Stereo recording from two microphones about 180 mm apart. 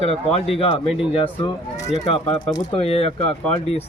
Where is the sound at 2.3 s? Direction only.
25° left (ahead or behind).